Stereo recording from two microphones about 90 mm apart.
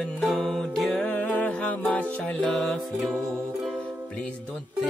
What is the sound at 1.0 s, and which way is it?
Music, 15° left (ahead or behind).